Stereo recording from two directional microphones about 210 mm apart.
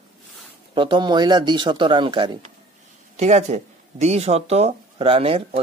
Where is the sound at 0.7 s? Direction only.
25° right (ahead or behind).